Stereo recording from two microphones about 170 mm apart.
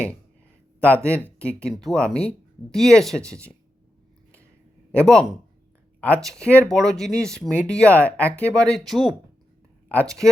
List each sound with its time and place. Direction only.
0.8 s speech: 10° right (ahead or behind)
1.1 s speech: 10° left (ahead or behind)
5.0 s speech: 5° left (ahead or behind)